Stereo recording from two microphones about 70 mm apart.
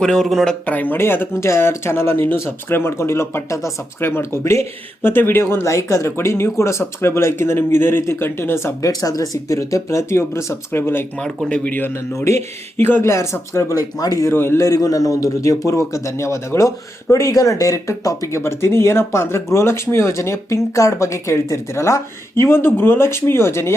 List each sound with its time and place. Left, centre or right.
0.0 s speech: centre
0.6 s speech: left
8.8 s a man's voice: left
11.4 s speech: centre
12.1 s a man's voice: left
12.7 s speech: left
13.1 s a man's voice: left
14.0 s speech: left
14.3 s speech: left
14.6 s a man's voice: left
18.3 s speech: left